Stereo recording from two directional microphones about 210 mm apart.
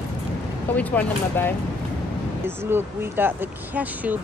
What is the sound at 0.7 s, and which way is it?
Speech, 5° left (ahead or behind).